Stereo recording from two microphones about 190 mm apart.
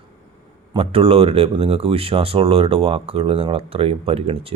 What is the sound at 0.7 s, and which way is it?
Speech, 30° right (ahead or behind).